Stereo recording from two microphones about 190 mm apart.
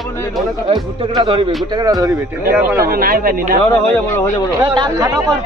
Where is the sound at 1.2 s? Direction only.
25° right (ahead or behind).